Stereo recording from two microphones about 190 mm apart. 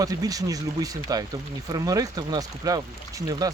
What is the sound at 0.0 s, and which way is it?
Speech, 20° right (ahead or behind).